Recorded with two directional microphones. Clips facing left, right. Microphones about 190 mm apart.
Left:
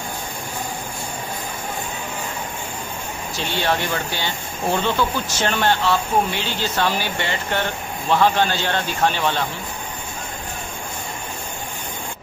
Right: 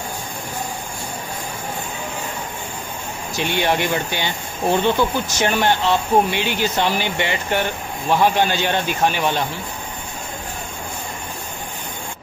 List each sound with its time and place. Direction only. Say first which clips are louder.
3.3 s speech: right 3 dB; 15° right (ahead or behind)